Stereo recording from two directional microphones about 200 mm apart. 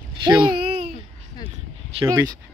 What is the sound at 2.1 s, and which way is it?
Speech, 15° right (ahead or behind).